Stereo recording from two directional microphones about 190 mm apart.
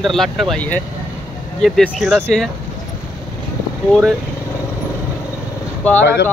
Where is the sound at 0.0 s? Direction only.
Centre (ahead or behind).